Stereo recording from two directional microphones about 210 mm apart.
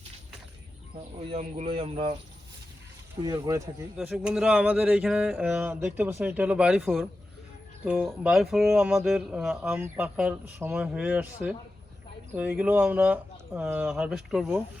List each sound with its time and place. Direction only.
1.3 s speech: 30° right (ahead or behind)
3.2 s speech: 15° right (ahead or behind)
3.9 s speech: centre (ahead or behind)